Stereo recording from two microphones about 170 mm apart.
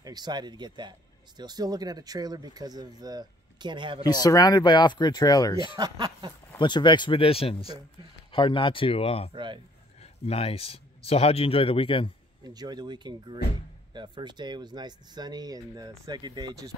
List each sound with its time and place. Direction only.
0.0 s speech: 25° right (ahead or behind)
4.2 s speech: 20° left (ahead or behind)
5.8 s speech: 20° right (ahead or behind)
6.6 s speech: 25° left (ahead or behind)
9.3 s speech: 30° right (ahead or behind)
10.2 s speech: 35° left (ahead or behind)
12.4 s speech: 25° right (ahead or behind)